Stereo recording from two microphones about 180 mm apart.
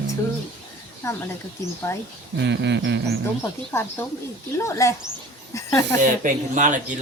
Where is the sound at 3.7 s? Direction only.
10° left (ahead or behind).